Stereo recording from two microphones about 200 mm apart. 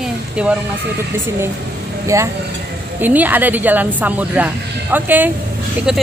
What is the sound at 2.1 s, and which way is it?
Speech, 15° right (ahead or behind).